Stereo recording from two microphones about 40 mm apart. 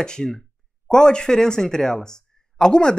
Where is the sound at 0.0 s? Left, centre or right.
Centre.